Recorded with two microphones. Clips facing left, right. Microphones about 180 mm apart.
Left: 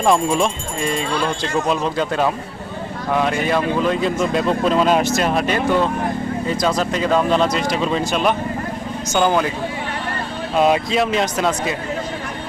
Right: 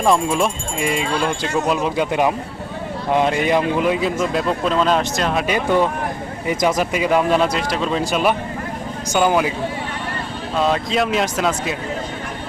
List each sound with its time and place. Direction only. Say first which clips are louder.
0.0 s speech: even; centre (ahead or behind)
5.5 s speech: even; 15° right (ahead or behind)
10.5 s speech: left 3 dB; 15° left (ahead or behind)
10.9 s speech: left 1 dB; centre (ahead or behind)